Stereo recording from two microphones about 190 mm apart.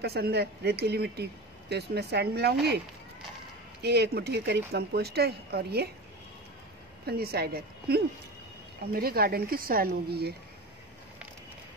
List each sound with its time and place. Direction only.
0.0 s speech: 55° right (ahead or behind)
3.8 s speech: 60° right (ahead or behind)
7.1 s speech: 55° right (ahead or behind)